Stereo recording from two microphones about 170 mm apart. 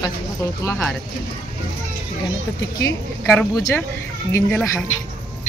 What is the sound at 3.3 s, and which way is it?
Speech, centre (ahead or behind).